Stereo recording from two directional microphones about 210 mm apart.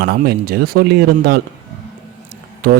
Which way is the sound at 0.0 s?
50° right (ahead or behind).